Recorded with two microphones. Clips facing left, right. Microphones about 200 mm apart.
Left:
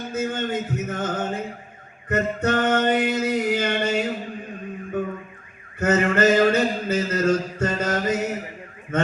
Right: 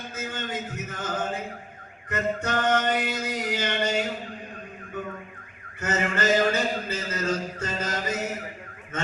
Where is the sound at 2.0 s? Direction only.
55° left (ahead or behind).